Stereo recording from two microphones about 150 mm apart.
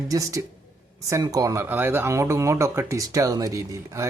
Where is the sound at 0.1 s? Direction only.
20° right (ahead or behind).